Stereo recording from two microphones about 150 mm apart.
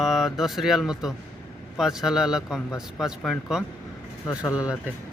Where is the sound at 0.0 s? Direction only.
Centre (ahead or behind).